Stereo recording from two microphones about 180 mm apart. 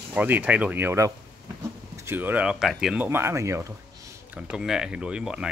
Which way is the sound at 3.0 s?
15° right (ahead or behind).